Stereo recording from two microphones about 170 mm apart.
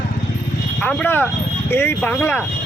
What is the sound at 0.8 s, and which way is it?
A man's voice, 10° left (ahead or behind).